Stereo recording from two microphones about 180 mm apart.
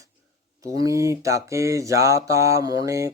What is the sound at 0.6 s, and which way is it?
Speech, 20° right (ahead or behind).